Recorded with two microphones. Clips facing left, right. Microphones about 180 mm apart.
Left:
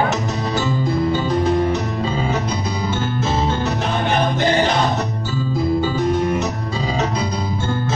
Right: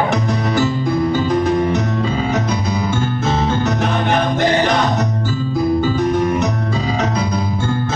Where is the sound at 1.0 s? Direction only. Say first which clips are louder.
Right 2 dB; 55° right (ahead or behind).